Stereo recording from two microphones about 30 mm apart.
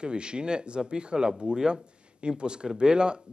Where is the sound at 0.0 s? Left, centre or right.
Right.